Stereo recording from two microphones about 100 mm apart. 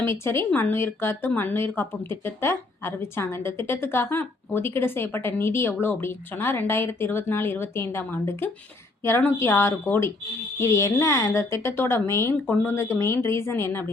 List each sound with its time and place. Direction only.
0.0 s speech: 25° left (ahead or behind)